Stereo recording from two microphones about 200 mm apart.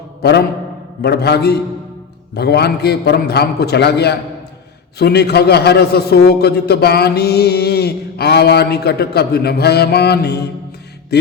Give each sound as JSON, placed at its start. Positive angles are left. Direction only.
{"t": 0.2, "sound": "a man's voice", "side_deg": 55}
{"t": 11.1, "sound": "music", "side_deg": 55}